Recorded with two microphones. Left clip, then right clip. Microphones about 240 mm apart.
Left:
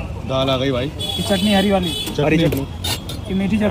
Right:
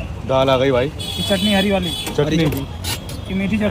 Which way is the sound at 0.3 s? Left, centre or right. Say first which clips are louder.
Right 4 dB; right.